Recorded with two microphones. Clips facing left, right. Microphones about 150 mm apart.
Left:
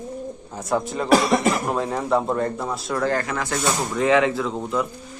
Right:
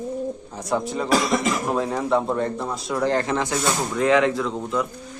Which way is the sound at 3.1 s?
25° right (ahead or behind).